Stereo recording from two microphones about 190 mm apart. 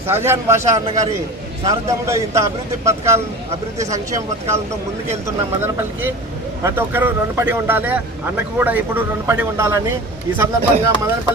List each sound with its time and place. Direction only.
0.1 s a man's voice: 15° right (ahead or behind)
6.6 s a man's voice: 15° right (ahead or behind)